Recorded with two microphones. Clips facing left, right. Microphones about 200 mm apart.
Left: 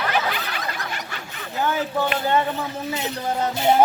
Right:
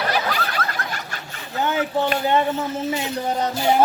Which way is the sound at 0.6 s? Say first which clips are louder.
Right 3 dB; 15° left (ahead or behind).